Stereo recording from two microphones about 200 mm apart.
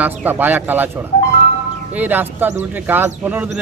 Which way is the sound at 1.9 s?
10° right (ahead or behind).